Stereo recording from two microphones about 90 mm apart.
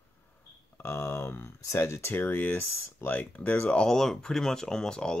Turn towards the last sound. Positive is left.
turn(degrees=10)  # may be behind; listen again after turning